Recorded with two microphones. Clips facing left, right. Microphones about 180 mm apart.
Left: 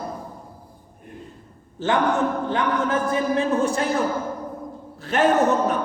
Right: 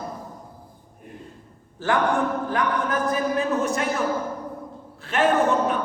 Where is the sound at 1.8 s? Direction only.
20° left (ahead or behind).